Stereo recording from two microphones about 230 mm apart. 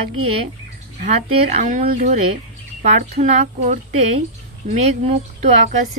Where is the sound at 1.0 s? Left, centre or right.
Right.